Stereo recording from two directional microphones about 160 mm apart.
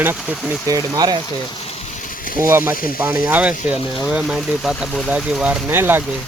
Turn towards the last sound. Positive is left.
turn(degrees=-10)  # may be behind; listen again after turning